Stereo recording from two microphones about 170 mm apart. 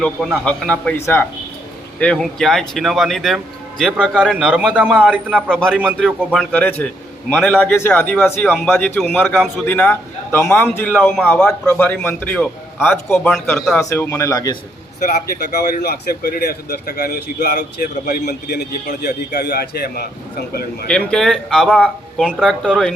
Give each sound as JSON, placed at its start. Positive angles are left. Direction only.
{"t": 0.0, "sound": "speech", "side_deg": 0}
{"t": 13.9, "sound": "speech", "side_deg": 15}
{"t": 15.0, "sound": "speech", "side_deg": 60}
{"t": 20.8, "sound": "speech", "side_deg": 5}